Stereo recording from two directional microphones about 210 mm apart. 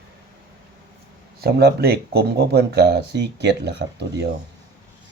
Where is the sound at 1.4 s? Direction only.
50° right (ahead or behind).